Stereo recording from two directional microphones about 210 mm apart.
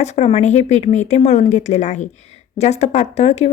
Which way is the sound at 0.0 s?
30° left (ahead or behind).